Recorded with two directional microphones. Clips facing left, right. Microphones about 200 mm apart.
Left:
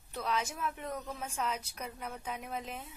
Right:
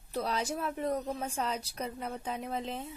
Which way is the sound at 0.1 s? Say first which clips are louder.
Right 3 dB; 35° right (ahead or behind).